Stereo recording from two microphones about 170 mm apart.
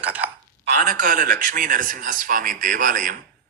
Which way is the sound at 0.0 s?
10° right (ahead or behind).